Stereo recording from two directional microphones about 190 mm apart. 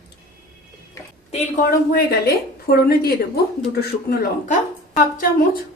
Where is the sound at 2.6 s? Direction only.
55° left (ahead or behind).